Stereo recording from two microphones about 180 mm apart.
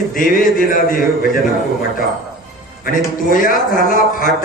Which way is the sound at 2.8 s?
50° left (ahead or behind).